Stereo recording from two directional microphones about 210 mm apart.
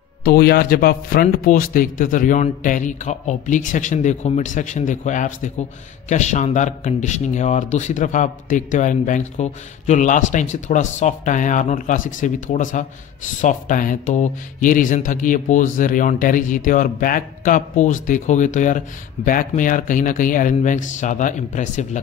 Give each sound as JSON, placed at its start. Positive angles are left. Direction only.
{"t": 0.2, "sound": "a man's voice", "side_deg": 45}